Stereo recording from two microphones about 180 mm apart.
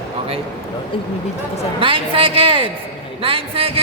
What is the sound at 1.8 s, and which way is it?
A man's voice, 30° right (ahead or behind).